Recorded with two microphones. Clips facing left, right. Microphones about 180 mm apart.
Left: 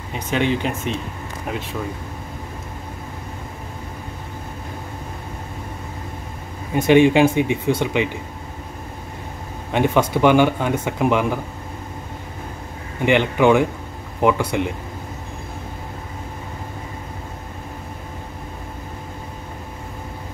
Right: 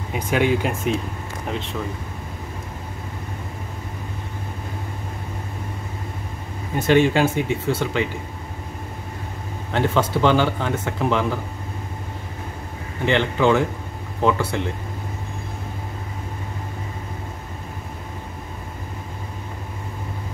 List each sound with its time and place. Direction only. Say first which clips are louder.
0.1 s speech: right 1 dB; 5° right (ahead or behind)
6.7 s speech: left 4 dB; 15° left (ahead or behind)
9.7 s speech: left 3 dB; 15° left (ahead or behind)
13.0 s speech: left 3 dB; 15° left (ahead or behind)